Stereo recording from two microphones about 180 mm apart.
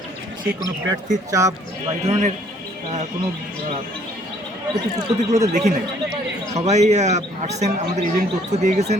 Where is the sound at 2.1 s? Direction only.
40° right (ahead or behind).